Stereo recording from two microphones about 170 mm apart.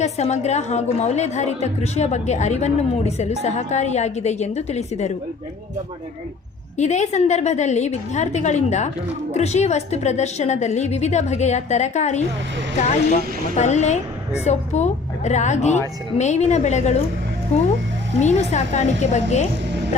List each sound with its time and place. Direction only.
0.0 s a woman's voice: 40° left (ahead or behind)
6.7 s a woman's voice: 45° left (ahead or behind)
18.2 s a woman's voice: 40° left (ahead or behind)